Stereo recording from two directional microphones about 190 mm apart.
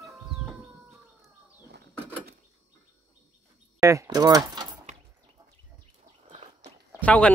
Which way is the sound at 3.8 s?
15° right (ahead or behind).